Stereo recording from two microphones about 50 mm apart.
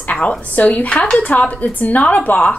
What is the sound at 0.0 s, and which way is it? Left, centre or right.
A woman's voice, left.